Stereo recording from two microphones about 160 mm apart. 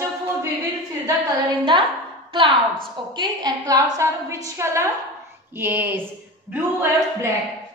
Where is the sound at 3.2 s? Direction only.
25° right (ahead or behind).